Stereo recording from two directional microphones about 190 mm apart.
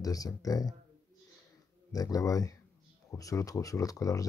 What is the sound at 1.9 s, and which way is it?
Speech, 20° left (ahead or behind).